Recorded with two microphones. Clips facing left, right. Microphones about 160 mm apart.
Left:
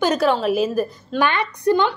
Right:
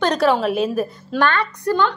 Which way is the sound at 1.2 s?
15° left (ahead or behind).